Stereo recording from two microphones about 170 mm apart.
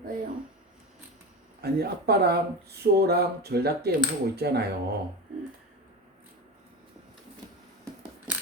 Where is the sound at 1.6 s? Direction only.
65° right (ahead or behind).